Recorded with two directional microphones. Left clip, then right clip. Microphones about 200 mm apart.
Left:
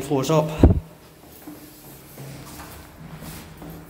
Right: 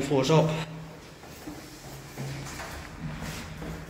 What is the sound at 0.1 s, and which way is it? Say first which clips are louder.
Speech: left 3 dB; 30° left (ahead or behind).